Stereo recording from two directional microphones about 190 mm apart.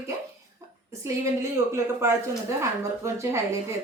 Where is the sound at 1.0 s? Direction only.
15° right (ahead or behind).